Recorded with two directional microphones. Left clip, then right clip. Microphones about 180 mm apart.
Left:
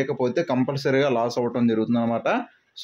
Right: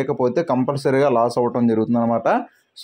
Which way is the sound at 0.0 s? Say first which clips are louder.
Right 4 dB; 15° right (ahead or behind).